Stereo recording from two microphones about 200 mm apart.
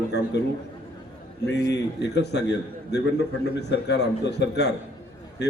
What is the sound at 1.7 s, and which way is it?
Speech, 60° left (ahead or behind).